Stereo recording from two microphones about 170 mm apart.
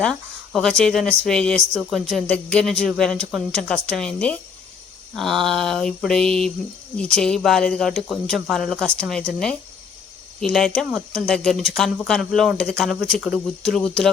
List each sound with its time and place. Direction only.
0.0 s speech: 5° left (ahead or behind)